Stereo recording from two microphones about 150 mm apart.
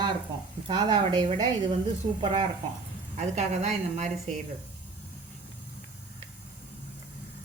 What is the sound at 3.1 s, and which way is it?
Speech, 50° right (ahead or behind).